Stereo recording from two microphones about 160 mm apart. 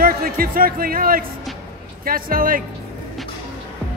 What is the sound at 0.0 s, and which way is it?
Speech, 65° right (ahead or behind).